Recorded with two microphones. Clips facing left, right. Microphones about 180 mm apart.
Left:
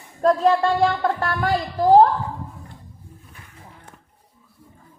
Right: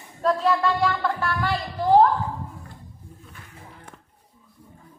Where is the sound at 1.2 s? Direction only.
45° left (ahead or behind).